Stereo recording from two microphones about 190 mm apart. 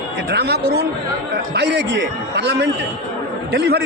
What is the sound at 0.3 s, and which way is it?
A man's voice, 60° right (ahead or behind).